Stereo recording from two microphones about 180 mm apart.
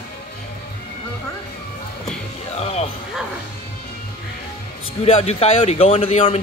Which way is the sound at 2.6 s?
35° left (ahead or behind).